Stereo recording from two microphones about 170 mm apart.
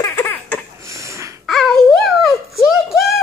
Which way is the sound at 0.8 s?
20° right (ahead or behind).